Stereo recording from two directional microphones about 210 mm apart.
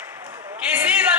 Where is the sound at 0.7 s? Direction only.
5° right (ahead or behind).